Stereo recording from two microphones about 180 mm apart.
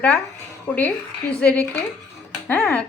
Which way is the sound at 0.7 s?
10° left (ahead or behind).